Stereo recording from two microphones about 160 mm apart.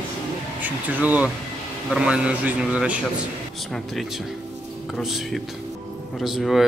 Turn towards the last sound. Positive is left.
turn(degrees=0)  # may be behind; listen again after turning